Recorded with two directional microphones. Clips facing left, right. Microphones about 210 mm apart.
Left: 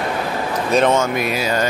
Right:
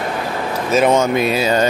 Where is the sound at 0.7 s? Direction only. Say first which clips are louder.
Right 1 dB; 5° right (ahead or behind).